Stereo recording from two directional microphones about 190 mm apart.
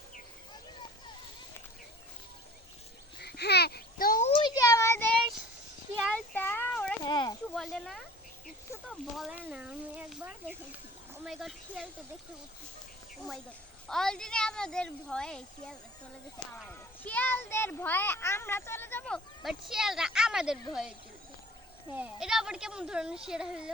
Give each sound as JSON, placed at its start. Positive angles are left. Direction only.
{"t": 3.2, "sound": "babbling", "side_deg": 60}
{"t": 4.3, "sound": "child singing", "side_deg": 25}
{"t": 6.1, "sound": "a sound", "side_deg": 10}
{"t": 7.0, "sound": "a sound", "side_deg": 20}
{"t": 7.5, "sound": "snake", "side_deg": 0}
{"t": 9.1, "sound": "a sound", "side_deg": -5}
{"t": 11.3, "sound": "speech", "side_deg": 0}
{"t": 13.8, "sound": "a child's voice", "side_deg": 5}
{"t": 21.9, "sound": "speech", "side_deg": -5}